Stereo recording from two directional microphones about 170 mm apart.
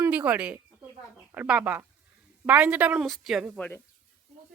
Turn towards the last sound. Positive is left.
turn(degrees=-5)  # may be behind; listen again after turning